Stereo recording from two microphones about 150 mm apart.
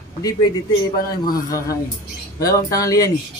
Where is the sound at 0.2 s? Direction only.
25° left (ahead or behind).